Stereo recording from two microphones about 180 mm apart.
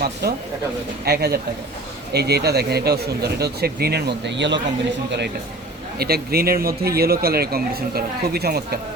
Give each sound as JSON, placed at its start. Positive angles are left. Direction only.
{"t": 0.0, "sound": "speech", "side_deg": -60}
{"t": 6.0, "sound": "speech", "side_deg": -60}